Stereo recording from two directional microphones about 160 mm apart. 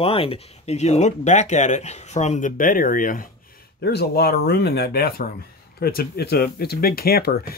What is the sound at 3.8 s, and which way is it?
Speech, 90° left.